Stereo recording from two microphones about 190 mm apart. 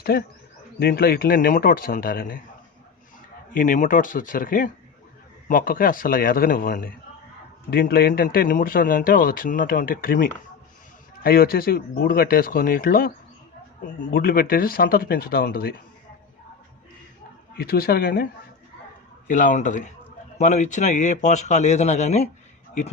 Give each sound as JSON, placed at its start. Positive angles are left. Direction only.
{"t": 0.0, "sound": "a man's voice", "side_deg": 50}
{"t": 3.5, "sound": "a man's voice", "side_deg": 45}
{"t": 17.6, "sound": "a man's voice", "side_deg": 55}
{"t": 19.3, "sound": "speech", "side_deg": 45}